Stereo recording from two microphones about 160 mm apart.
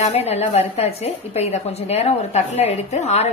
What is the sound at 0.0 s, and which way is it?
A woman's voice, 40° left (ahead or behind).